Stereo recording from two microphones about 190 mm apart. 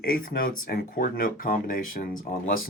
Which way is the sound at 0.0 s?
50° left (ahead or behind).